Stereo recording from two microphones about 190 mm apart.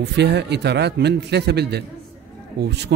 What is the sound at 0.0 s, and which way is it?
Speech, 65° right (ahead or behind).